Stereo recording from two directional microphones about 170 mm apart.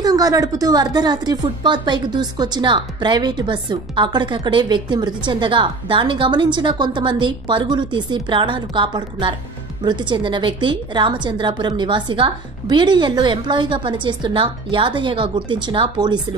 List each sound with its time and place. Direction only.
0.0 s a woman's voice: 20° right (ahead or behind)